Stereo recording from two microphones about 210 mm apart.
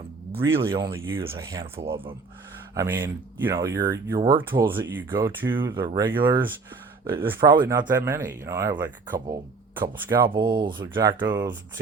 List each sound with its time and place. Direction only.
0.3 s speech: 10° right (ahead or behind)
0.6 s speech: 25° right (ahead or behind)
0.9 s speech: 10° right (ahead or behind)
1.8 s speech: 25° right (ahead or behind)
2.7 s speech: 10° right (ahead or behind)
5.5 s speech: 20° right (ahead or behind)